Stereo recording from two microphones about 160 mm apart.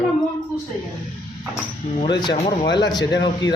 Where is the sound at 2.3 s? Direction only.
40° left (ahead or behind).